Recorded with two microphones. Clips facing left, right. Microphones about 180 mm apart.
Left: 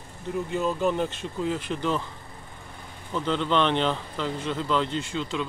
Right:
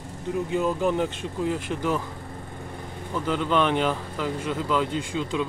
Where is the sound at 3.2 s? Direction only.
10° right (ahead or behind).